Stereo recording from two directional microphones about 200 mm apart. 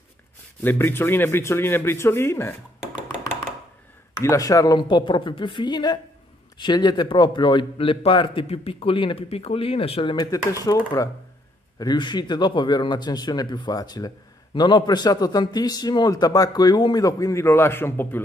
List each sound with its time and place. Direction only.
0.6 s speech: 10° left (ahead or behind)
4.1 s speech: 15° left (ahead or behind)
11.8 s speech: 20° left (ahead or behind)